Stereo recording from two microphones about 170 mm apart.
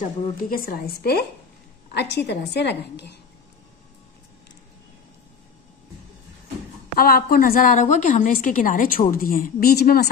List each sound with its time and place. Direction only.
0.0 s a woman's voice: 55° left (ahead or behind)
2.0 s a woman's voice: 80° left
7.0 s a woman's voice: 60° left (ahead or behind)